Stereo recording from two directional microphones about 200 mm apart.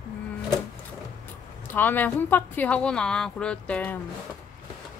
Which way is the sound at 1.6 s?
10° left (ahead or behind).